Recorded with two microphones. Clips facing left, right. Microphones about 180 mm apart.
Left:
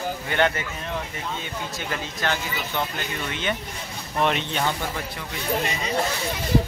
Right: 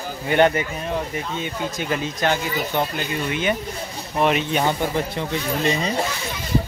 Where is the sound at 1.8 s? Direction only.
15° right (ahead or behind).